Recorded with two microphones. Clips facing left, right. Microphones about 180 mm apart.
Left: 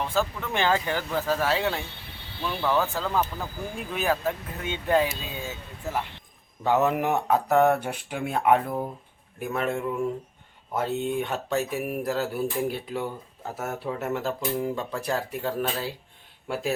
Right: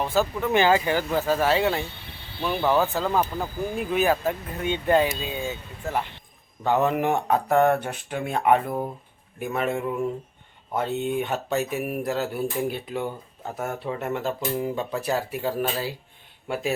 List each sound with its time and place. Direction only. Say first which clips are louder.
0.1 s speech: right 5 dB; 5° right (ahead or behind)
2.4 s speech: right 4 dB; 20° right (ahead or behind)
2.7 s speech: right 3 dB; 5° right (ahead or behind)